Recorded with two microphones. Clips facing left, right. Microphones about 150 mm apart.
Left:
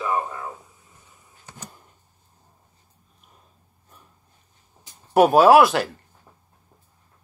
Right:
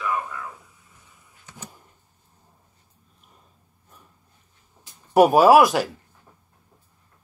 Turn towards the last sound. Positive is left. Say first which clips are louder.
# even
turn(degrees=-5)  # may be behind; listen again after turning